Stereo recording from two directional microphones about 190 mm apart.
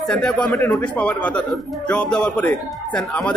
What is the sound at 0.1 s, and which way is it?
A man's voice, 5° left (ahead or behind).